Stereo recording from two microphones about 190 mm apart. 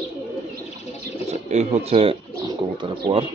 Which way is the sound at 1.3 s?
35° right (ahead or behind).